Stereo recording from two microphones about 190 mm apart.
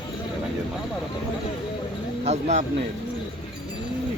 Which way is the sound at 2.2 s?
35° right (ahead or behind).